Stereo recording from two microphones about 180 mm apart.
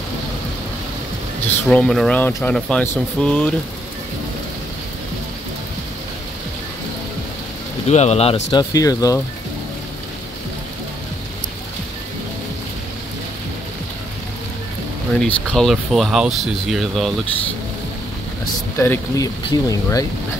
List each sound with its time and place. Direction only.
1.7 s speech: 5° left (ahead or behind)
7.9 s speech: 35° left (ahead or behind); by 9.2 s 20° left (ahead or behind)
15.1 s speech: 5° left (ahead or behind)
18.4 s speech: 15° left (ahead or behind)